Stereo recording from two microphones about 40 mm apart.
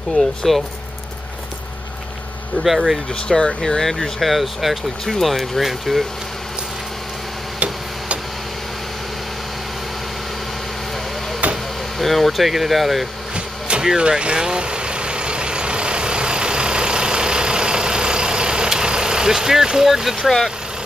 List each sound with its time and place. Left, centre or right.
0.2 s speech: left
2.6 s speech: centre
3.2 s speech: left; by 6.0 s centre
11.4 s a sound: right
12.0 s speech: centre
13.3 s a sound: right
13.8 s vehicle: right